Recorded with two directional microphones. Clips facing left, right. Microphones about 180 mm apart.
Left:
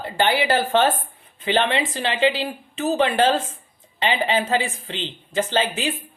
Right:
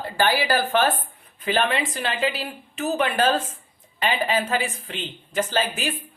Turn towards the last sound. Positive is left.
turn(degrees=25)  # may be behind; listen again after turning